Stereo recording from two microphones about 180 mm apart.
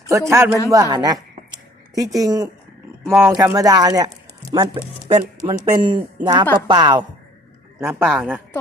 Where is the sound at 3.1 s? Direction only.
10° right (ahead or behind).